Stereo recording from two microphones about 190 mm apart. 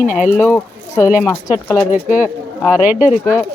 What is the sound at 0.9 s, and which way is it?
Speech, 5° right (ahead or behind).